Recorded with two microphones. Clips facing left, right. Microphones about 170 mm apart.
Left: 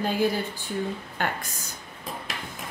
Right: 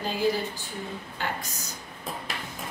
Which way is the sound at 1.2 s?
55° left (ahead or behind).